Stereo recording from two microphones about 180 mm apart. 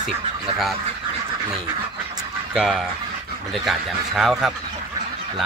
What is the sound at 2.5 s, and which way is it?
Speech, centre (ahead or behind).